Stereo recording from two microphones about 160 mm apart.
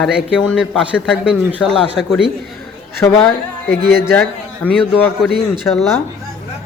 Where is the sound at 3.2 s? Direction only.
15° left (ahead or behind).